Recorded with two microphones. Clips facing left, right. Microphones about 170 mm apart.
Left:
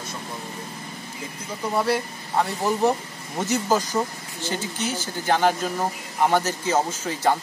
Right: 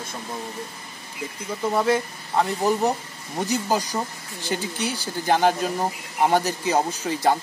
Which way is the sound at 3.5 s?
15° right (ahead or behind).